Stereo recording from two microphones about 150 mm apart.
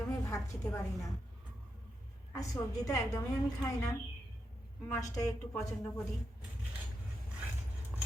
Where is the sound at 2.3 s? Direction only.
25° left (ahead or behind).